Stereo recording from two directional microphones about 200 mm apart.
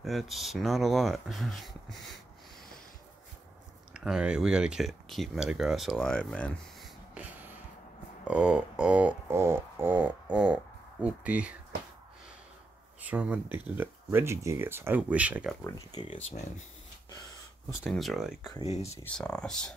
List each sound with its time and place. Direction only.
0.0 s speech: centre (ahead or behind)
3.9 s speech: 5° right (ahead or behind)
7.2 s a sound: 5° right (ahead or behind)
8.3 s speech: 5° right (ahead or behind)
13.0 s speech: 5° right (ahead or behind)
15.6 s speech: 20° left (ahead or behind)
16.2 s speech: 35° left (ahead or behind)
17.8 s speech: centre (ahead or behind)
18.6 s speech: 30° left (ahead or behind)
19.1 s speech: 5° left (ahead or behind)